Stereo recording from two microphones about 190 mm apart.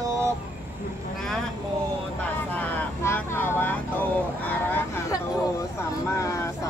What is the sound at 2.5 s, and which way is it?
Speech, 10° left (ahead or behind).